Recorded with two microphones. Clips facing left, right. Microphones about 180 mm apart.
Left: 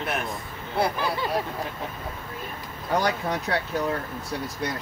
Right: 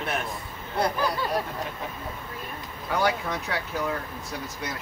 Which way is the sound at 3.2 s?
35° left (ahead or behind).